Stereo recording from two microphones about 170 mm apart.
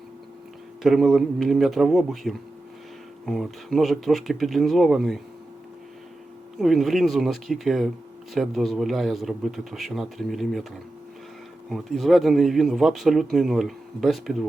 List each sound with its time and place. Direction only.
0.8 s a man's voice: centre (ahead or behind)
6.6 s a man's voice: centre (ahead or behind)
11.7 s a man's voice: centre (ahead or behind)